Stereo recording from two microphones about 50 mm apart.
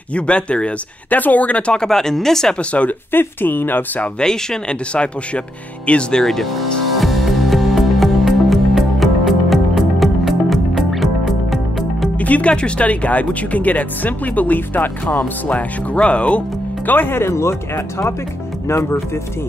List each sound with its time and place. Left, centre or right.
0.1 s speech: left
1.7 s speech: centre
2.7 s speech: left
3.1 s speech: left
4.2 s speech: centre
6.2 s music: centre
12.2 s speech: left
16.8 s speech: left
17.2 s speech: left